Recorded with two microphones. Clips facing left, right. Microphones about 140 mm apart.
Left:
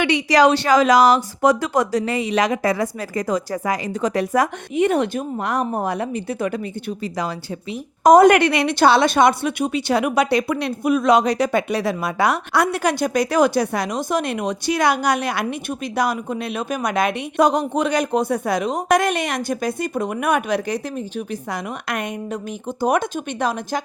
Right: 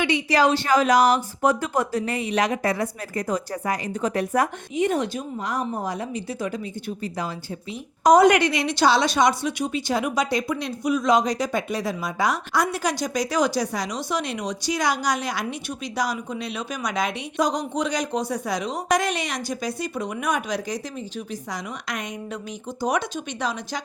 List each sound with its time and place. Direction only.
0.0 s speech: 80° left; by 6.6 s 60° left (ahead or behind)
8.0 s a woman's voice: 50° left (ahead or behind)